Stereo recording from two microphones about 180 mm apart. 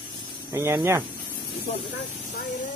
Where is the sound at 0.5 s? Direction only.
15° right (ahead or behind).